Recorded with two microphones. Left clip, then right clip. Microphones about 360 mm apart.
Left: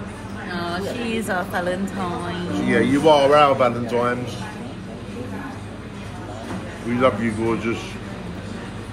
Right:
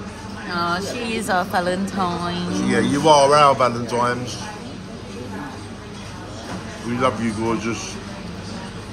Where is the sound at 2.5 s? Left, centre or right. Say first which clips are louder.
Left 2 dB; centre.